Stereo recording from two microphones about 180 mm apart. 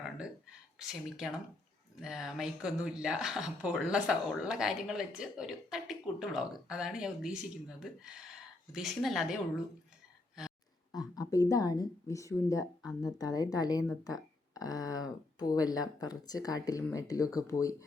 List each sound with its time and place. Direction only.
0.8 s speech: centre (ahead or behind)
10.9 s speech: 20° left (ahead or behind)